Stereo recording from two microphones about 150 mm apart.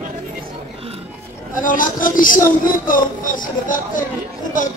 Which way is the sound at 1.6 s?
65° left (ahead or behind).